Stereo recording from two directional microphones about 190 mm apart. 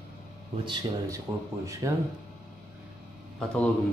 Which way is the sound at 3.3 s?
5° left (ahead or behind).